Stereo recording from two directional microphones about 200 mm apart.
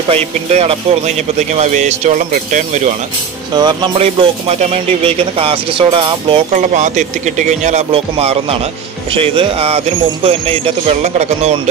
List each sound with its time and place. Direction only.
0.1 s a man's voice: 30° right (ahead or behind)
3.5 s speech: 20° right (ahead or behind)
6.5 s a man's voice: 35° right (ahead or behind)